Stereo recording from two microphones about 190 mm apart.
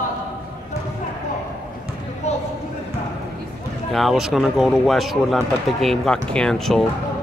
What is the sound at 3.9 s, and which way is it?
Speech, centre (ahead or behind).